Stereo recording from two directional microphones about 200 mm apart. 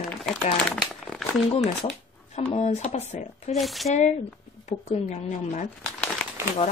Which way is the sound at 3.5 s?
Centre (ahead or behind).